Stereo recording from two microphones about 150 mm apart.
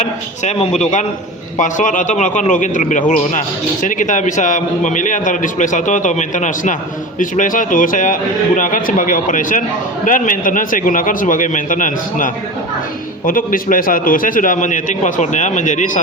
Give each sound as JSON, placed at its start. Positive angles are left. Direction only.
{"t": 0.0, "sound": "a man's voice", "side_deg": 50}